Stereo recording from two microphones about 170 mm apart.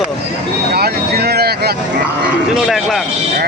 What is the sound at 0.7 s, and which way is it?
Speech, 65° right (ahead or behind).